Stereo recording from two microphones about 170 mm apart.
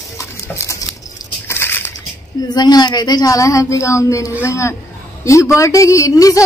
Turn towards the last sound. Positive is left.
turn(degrees=20)  # may be behind; listen again after turning